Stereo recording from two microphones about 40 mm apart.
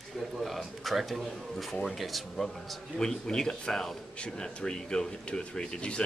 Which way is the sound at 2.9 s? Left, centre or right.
Centre.